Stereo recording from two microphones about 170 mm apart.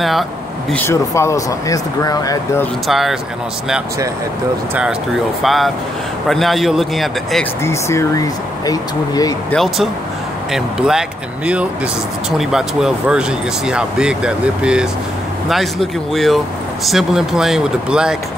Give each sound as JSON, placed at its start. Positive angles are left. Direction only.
{"t": 0.7, "sound": "speech", "side_deg": 15}
{"t": 2.9, "sound": "speech", "side_deg": 0}
{"t": 5.4, "sound": "speech", "side_deg": 0}
{"t": 7.6, "sound": "speech", "side_deg": 15}
{"t": 9.5, "sound": "speech", "side_deg": 0}